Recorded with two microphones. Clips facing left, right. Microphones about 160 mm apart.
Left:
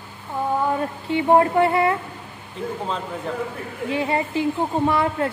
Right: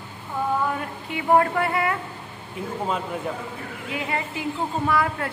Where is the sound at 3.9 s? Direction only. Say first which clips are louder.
Left 6 dB; 30° left (ahead or behind).